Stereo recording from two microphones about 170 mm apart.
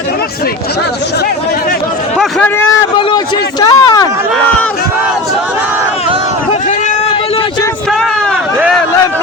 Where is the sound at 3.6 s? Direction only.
25° left (ahead or behind).